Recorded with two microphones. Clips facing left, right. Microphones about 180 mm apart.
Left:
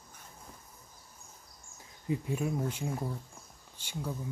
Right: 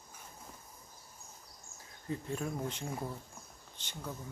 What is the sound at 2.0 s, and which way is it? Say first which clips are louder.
Speech: left 5 dB; 10° left (ahead or behind).